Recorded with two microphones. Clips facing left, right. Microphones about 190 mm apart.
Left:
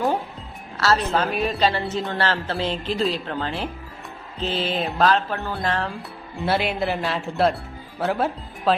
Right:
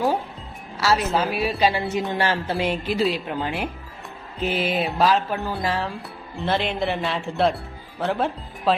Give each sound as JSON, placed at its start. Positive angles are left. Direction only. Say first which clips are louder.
{"t": 1.0, "sound": "speech", "louder": "even", "side_deg": -5}